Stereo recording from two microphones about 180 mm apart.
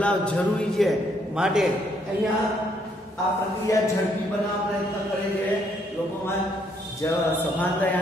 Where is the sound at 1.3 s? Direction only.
5° right (ahead or behind).